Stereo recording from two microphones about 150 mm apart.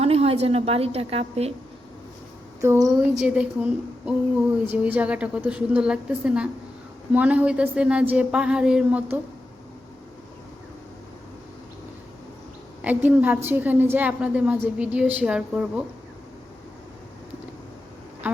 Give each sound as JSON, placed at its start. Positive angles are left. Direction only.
{"t": 0.0, "sound": "a woman's voice", "side_deg": -40}
{"t": 2.6, "sound": "a woman's voice", "side_deg": -20}
{"t": 3.2, "sound": "a woman's voice", "side_deg": -5}
{"t": 12.8, "sound": "a woman's voice", "side_deg": -10}